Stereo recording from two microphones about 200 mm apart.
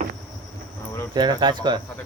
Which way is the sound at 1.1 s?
20° right (ahead or behind).